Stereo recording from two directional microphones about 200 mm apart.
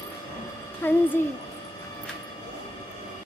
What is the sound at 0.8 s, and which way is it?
Speech, 10° left (ahead or behind).